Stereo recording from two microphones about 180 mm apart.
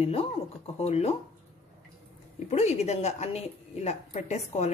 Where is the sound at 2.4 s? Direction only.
35° left (ahead or behind).